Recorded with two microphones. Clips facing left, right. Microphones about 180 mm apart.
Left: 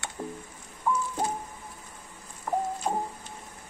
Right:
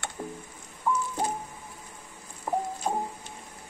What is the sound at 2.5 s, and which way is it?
Music, 15° right (ahead or behind).